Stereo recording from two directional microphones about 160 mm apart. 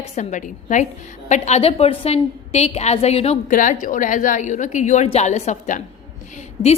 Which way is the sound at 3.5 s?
55° left (ahead or behind).